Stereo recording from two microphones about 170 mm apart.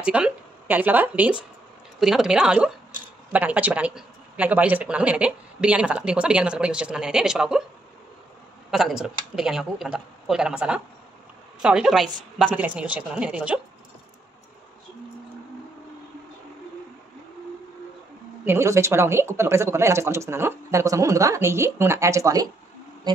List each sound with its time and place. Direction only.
0.0 s speech: 5° right (ahead or behind)
8.6 s speech: centre (ahead or behind)
18.4 s speech: 15° right (ahead or behind)